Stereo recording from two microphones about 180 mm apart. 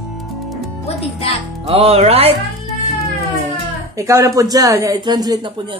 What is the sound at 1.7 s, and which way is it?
Speech, 35° right (ahead or behind).